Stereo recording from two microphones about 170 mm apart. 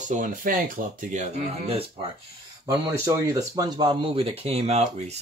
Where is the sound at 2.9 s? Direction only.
15° right (ahead or behind).